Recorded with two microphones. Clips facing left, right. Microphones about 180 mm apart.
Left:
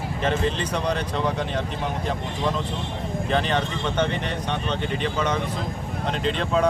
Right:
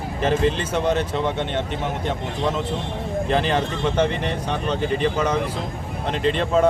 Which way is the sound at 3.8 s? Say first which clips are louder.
Right 5 dB; 30° right (ahead or behind).